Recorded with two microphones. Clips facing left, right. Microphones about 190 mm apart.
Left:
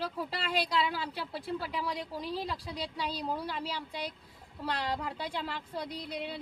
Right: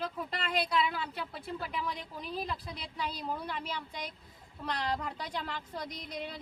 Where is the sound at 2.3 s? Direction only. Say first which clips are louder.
Right 2 dB; 35° left (ahead or behind).